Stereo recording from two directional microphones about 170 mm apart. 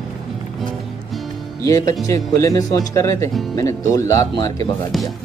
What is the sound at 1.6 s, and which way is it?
Speech, 20° left (ahead or behind).